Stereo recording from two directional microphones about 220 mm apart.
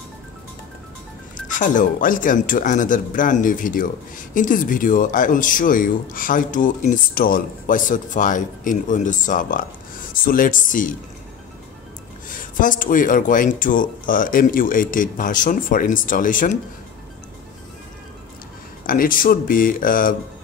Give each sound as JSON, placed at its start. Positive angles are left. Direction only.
{"t": 1.5, "sound": "speech", "side_deg": 35}
{"t": 12.3, "sound": "speech", "side_deg": 40}
{"t": 18.9, "sound": "speech", "side_deg": 40}